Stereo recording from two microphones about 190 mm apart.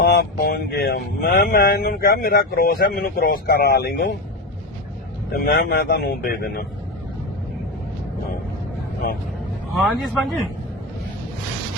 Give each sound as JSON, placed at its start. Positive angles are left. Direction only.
{"t": 0.0, "sound": "speech", "side_deg": 55}
{"t": 5.3, "sound": "a man's voice", "side_deg": 55}
{"t": 9.8, "sound": "speech", "side_deg": 0}